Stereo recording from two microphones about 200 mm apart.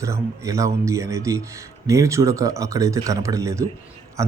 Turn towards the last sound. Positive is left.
turn(degrees=-15)  # may be behind; listen again after turning